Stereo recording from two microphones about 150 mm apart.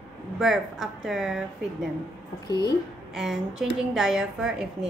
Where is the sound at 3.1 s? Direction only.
5° right (ahead or behind).